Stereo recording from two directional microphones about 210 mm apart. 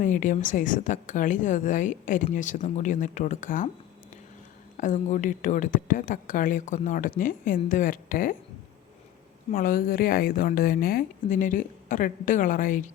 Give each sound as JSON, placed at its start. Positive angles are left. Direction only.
{"t": 0.0, "sound": "speech", "side_deg": 40}
{"t": 4.8, "sound": "speech", "side_deg": 35}
{"t": 9.5, "sound": "speech", "side_deg": 40}